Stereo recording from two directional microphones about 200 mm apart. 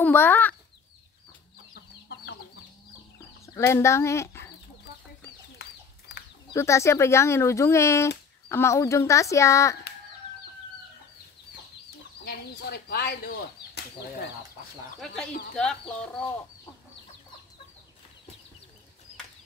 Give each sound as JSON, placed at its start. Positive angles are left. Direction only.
{"t": 0.0, "sound": "speech", "side_deg": 10}
{"t": 1.7, "sound": "chicken", "side_deg": 55}
{"t": 3.5, "sound": "speech", "side_deg": 15}
{"t": 6.5, "sound": "speech", "side_deg": 15}
{"t": 12.3, "sound": "speech", "side_deg": 50}
{"t": 15.0, "sound": "speech", "side_deg": 5}